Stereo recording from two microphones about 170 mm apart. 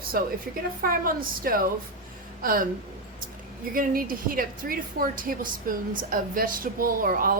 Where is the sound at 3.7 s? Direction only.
55° right (ahead or behind).